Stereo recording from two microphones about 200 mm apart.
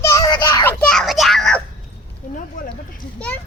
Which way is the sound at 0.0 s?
15° left (ahead or behind).